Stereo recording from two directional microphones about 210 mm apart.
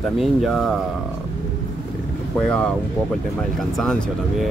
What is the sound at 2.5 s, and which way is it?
Speech, 5° left (ahead or behind).